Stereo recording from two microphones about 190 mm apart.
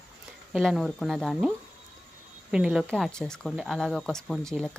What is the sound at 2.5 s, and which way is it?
Speech, 5° right (ahead or behind).